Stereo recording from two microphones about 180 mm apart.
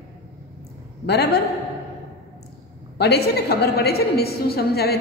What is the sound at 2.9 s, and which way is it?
A woman's voice, 65° left (ahead or behind).